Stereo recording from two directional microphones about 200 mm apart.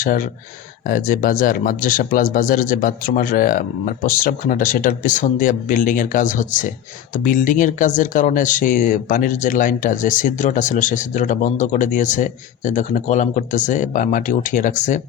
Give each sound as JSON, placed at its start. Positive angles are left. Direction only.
{"t": 0.0, "sound": "speech", "side_deg": 40}